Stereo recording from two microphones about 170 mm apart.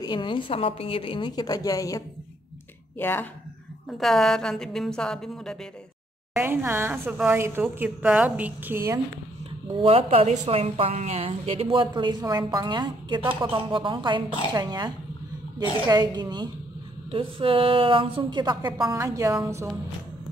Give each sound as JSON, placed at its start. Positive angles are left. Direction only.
{"t": 0.0, "sound": "a woman's voice", "side_deg": 30}
{"t": 4.0, "sound": "a woman's voice", "side_deg": 0}
{"t": 6.3, "sound": "a woman's voice", "side_deg": -15}
{"t": 9.8, "sound": "a woman's voice", "side_deg": -35}